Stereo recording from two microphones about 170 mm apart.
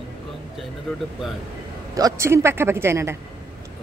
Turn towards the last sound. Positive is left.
turn(degrees=-15)  # may be behind; listen again after turning